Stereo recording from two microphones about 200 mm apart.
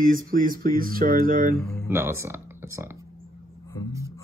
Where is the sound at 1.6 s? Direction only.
15° left (ahead or behind).